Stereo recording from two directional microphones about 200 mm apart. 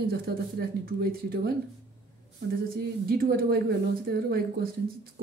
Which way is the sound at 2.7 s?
50° right (ahead or behind).